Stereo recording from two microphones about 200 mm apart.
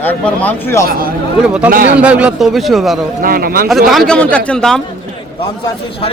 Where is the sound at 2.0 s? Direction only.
5° right (ahead or behind).